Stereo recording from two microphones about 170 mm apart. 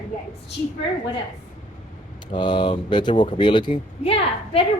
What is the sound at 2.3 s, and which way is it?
Speech, 25° left (ahead or behind).